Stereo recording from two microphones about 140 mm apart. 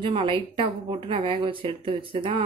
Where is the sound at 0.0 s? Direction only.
35° right (ahead or behind).